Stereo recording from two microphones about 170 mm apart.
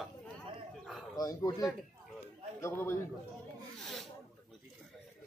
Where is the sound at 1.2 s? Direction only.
20° left (ahead or behind).